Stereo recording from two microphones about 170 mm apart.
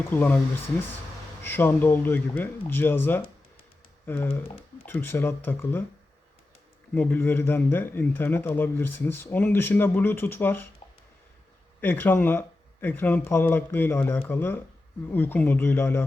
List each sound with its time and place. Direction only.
0.1 s speech: 10° left (ahead or behind)
1.4 s speech: 10° left (ahead or behind)
4.4 s speech: 30° left (ahead or behind)
4.9 s speech: 10° left (ahead or behind)
6.9 s speech: 10° left (ahead or behind)
11.8 s speech: 10° left (ahead or behind)